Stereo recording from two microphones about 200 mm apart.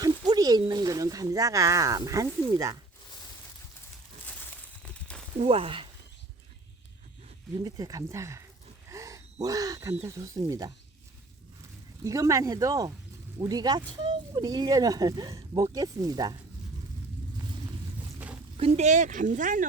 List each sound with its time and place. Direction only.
0.0 s speech: 20° right (ahead or behind)
4.9 s a sound: 5° left (ahead or behind)
5.4 s speech: 30° right (ahead or behind)
7.5 s speech: 20° right (ahead or behind)
8.9 s gasp: 15° right (ahead or behind)
9.9 s speech: 15° right (ahead or behind)
12.0 s speech: 15° right (ahead or behind)
18.5 s speech: 30° right (ahead or behind)